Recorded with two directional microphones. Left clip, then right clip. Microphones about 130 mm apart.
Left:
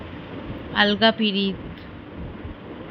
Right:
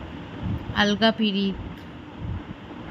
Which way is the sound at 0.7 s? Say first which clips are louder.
Left 3 dB; 15° right (ahead or behind).